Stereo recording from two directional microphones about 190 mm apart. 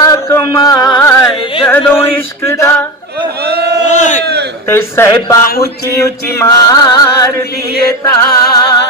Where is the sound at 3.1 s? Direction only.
55° right (ahead or behind).